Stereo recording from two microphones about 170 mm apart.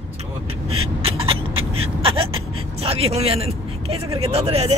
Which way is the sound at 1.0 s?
35° right (ahead or behind).